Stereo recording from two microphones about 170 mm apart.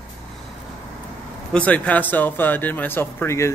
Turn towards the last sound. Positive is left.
turn(degrees=15)  # may be behind; listen again after turning